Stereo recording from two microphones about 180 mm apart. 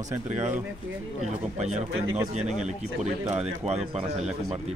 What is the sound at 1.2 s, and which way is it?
Speech, 40° right (ahead or behind).